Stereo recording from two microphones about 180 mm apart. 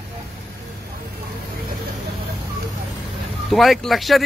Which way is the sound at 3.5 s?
Centre (ahead or behind).